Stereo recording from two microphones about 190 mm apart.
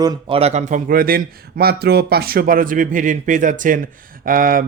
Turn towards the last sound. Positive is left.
turn(degrees=-45)  # may be behind; listen again after turning